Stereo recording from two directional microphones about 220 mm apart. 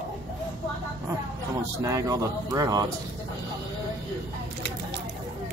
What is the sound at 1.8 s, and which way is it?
Speech, 15° right (ahead or behind).